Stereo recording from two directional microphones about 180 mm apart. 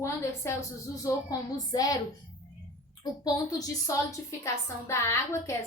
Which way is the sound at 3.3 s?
20° left (ahead or behind).